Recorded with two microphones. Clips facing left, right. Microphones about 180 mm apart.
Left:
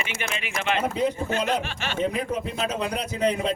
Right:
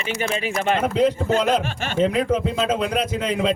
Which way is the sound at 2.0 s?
90° right.